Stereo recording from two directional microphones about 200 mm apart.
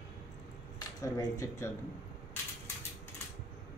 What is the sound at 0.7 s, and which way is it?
Speech, 20° left (ahead or behind).